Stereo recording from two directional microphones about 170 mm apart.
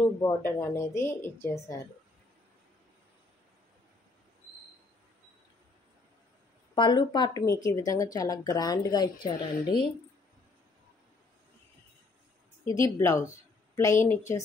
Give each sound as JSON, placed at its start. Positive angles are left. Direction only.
{"t": 0.0, "sound": "a woman's voice", "side_deg": 15}
{"t": 6.7, "sound": "speech", "side_deg": 25}
{"t": 12.8, "sound": "a woman's voice", "side_deg": 15}